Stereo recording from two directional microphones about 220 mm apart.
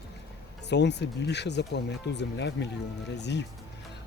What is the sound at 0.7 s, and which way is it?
Speech, 50° left (ahead or behind).